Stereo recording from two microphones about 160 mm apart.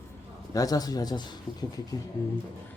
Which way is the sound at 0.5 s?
20° left (ahead or behind).